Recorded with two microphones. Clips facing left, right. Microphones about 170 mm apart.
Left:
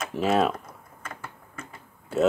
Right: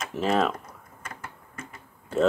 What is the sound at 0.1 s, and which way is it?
Speech, 15° left (ahead or behind).